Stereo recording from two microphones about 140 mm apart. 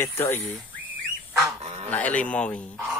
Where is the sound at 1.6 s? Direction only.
45° right (ahead or behind).